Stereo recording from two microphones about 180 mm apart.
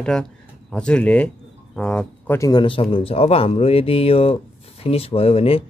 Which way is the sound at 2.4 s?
25° left (ahead or behind).